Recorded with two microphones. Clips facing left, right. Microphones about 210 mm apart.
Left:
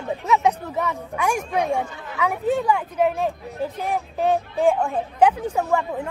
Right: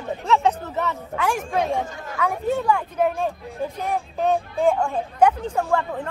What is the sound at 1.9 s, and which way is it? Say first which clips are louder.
Speech: right 1 dB; 45° right (ahead or behind).